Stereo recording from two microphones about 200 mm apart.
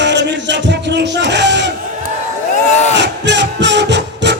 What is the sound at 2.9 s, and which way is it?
Music, 60° right (ahead or behind).